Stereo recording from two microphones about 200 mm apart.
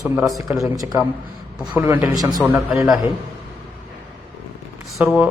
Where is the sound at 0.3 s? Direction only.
15° right (ahead or behind).